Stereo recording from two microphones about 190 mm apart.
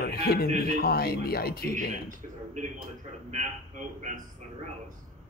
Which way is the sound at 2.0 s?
40° right (ahead or behind).